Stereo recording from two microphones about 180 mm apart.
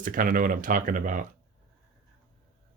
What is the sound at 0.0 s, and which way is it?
Speech, 50° right (ahead or behind).